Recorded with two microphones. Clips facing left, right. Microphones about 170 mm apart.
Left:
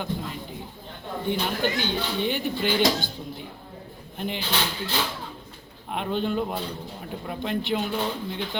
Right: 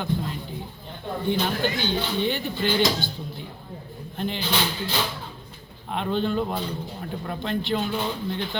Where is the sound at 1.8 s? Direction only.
10° left (ahead or behind).